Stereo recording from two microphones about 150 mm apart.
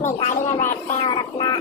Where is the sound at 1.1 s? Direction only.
30° left (ahead or behind).